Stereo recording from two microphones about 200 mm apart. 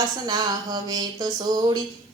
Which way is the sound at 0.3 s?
20° right (ahead or behind).